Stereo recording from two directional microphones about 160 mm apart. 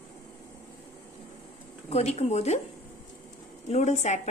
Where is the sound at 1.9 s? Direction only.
40° left (ahead or behind).